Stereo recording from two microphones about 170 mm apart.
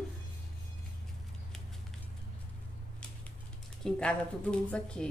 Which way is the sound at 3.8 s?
5° left (ahead or behind).